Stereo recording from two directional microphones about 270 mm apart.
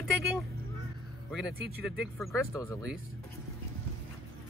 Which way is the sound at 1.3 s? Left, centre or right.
Centre.